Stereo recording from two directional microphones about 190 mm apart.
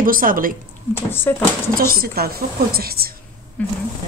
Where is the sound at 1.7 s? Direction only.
50° right (ahead or behind).